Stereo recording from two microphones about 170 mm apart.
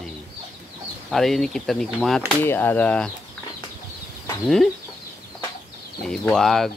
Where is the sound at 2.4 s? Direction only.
10° left (ahead or behind).